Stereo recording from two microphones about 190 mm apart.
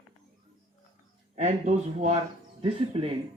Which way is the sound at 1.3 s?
40° right (ahead or behind).